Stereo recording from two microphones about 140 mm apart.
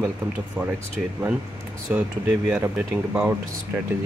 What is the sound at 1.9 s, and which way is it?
Speech, 15° right (ahead or behind).